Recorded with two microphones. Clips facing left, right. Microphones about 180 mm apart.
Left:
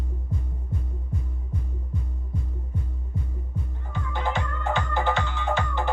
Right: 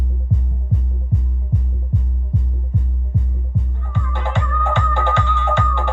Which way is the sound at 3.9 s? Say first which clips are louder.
Right 3 dB; 65° right (ahead or behind).